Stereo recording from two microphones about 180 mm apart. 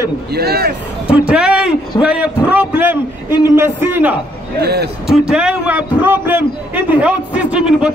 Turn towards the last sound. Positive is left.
turn(degrees=-5)  # may be behind; listen again after turning